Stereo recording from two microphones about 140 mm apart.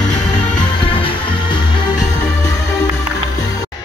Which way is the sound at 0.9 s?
40° left (ahead or behind).